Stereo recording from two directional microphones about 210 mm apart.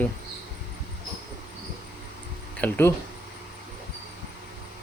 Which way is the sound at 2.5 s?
10° left (ahead or behind).